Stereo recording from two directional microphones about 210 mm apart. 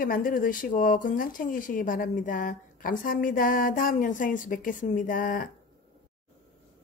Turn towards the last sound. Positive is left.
turn(degrees=40)  # may be behind; listen again after turning